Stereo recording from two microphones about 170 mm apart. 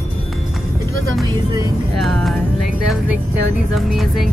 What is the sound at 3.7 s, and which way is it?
Speech, centre (ahead or behind).